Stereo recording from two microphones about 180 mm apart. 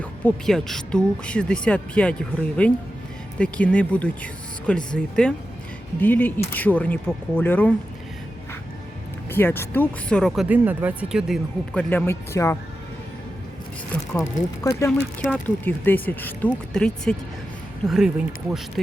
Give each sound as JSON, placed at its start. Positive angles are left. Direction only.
{"t": 0.0, "sound": "speech", "side_deg": 5}
{"t": 9.3, "sound": "speech", "side_deg": 10}
{"t": 11.7, "sound": "speech", "side_deg": 10}
{"t": 14.6, "sound": "speech", "side_deg": 15}
{"t": 14.8, "sound": "speech", "side_deg": 5}